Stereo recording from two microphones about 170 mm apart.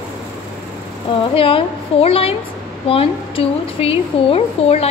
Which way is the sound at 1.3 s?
30° left (ahead or behind).